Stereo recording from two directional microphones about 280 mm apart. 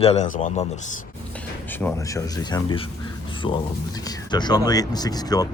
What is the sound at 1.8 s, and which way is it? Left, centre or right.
Speech, centre.